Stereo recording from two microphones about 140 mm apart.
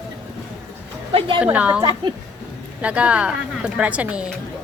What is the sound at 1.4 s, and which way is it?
Speech, 10° right (ahead or behind).